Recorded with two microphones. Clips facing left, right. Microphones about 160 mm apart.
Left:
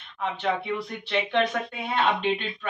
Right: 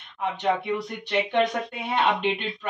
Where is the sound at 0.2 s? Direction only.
15° right (ahead or behind).